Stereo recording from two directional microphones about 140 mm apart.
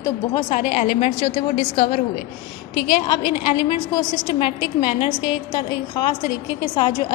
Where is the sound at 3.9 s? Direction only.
35° left (ahead or behind).